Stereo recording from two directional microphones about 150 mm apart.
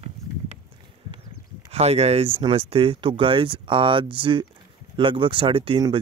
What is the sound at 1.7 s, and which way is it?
Speech, 45° right (ahead or behind).